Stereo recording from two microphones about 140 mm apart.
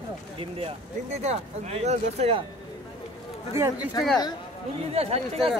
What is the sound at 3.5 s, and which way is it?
Speech, 20° right (ahead or behind).